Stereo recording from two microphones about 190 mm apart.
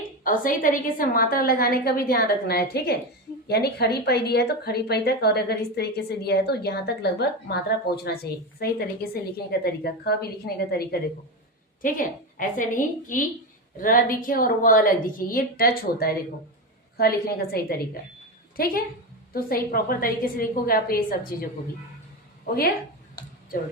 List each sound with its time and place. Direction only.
0.3 s a woman's voice: 45° left (ahead or behind)